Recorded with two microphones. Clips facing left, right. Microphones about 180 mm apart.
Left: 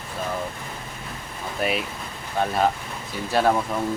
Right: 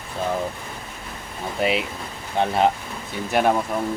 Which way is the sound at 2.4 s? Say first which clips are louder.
Right 2 dB; 20° right (ahead or behind).